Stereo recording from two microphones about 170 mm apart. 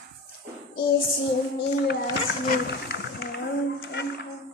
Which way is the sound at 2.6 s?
80° left.